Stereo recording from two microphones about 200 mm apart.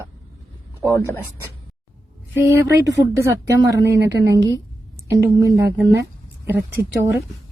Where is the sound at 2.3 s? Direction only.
10° right (ahead or behind).